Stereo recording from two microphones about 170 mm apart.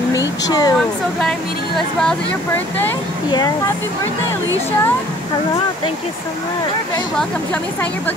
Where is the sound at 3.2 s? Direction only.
25° left (ahead or behind).